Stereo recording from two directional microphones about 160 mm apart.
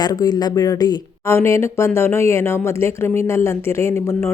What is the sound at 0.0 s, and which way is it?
Speech, 25° left (ahead or behind).